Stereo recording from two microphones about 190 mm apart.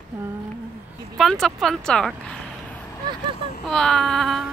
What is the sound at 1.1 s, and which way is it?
Speech, centre (ahead or behind).